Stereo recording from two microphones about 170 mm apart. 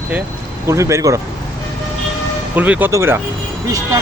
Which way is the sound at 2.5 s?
10° right (ahead or behind).